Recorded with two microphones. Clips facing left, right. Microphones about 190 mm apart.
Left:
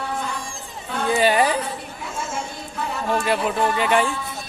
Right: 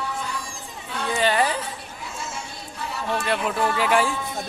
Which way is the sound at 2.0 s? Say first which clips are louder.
Left 5 dB; 55° left (ahead or behind).